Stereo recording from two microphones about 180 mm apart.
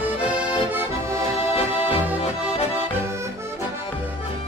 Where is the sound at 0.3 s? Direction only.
15° right (ahead or behind).